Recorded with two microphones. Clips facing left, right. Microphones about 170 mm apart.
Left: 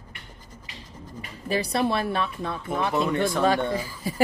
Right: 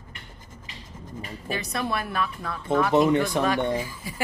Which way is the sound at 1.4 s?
35° left (ahead or behind).